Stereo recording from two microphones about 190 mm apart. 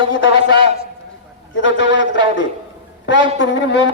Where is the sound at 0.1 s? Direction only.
80° left.